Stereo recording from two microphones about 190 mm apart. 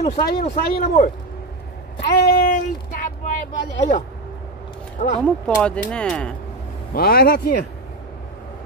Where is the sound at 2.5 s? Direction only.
45° left (ahead or behind).